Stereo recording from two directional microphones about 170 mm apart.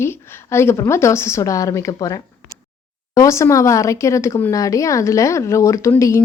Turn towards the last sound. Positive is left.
turn(degrees=20)  # may be behind; listen again after turning